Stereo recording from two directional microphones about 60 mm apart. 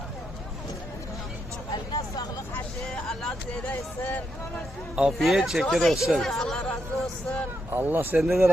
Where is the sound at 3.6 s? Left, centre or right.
Left.